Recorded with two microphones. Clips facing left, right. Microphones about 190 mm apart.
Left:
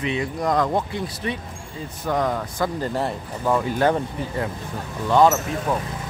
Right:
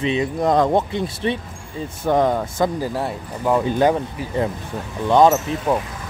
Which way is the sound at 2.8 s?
5° right (ahead or behind).